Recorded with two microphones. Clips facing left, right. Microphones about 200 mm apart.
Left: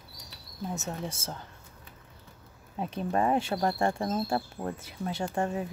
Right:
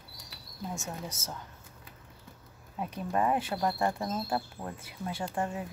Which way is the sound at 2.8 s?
25° left (ahead or behind).